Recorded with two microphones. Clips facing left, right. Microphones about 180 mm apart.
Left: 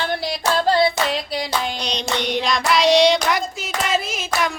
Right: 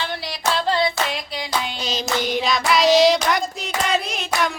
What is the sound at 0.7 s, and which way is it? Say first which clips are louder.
Hands: left 6 dB; 35° left (ahead or behind).